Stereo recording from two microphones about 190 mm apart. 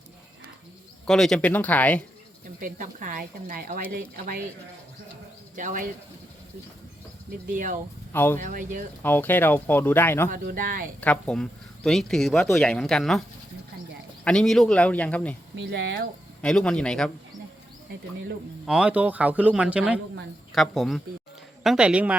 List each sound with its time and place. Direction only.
1.0 s speech: centre (ahead or behind)
2.6 s speech: 45° right (ahead or behind)
5.5 s speech: 45° right (ahead or behind)
7.5 s speech: 45° right (ahead or behind)
8.1 s speech: 10° left (ahead or behind)
8.4 s speech: 45° right (ahead or behind)
9.0 s speech: 10° left (ahead or behind)
10.2 s speech: 45° right (ahead or behind)
11.0 s speech: 5° left (ahead or behind)
14.3 s speech: 5° left (ahead or behind)
15.5 s speech: 75° right (ahead or behind)
16.4 s speech: 5° left (ahead or behind)
18.6 s speech: 5° right (ahead or behind)